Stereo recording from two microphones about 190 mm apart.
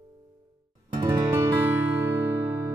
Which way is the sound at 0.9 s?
20° right (ahead or behind).